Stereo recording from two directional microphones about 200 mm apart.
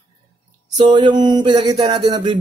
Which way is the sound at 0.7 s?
20° right (ahead or behind).